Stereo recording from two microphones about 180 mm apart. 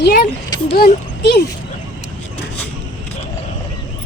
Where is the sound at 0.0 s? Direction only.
65° left (ahead or behind).